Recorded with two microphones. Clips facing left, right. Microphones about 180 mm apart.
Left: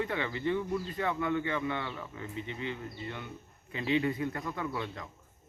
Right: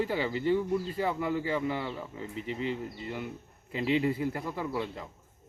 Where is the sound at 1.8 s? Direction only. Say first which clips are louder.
Right 3 dB; 25° right (ahead or behind).